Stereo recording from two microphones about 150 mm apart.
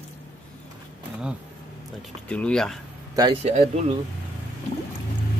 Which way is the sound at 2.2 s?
10° left (ahead or behind).